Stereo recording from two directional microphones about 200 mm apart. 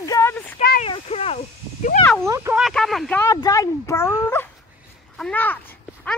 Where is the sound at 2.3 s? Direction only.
15° right (ahead or behind).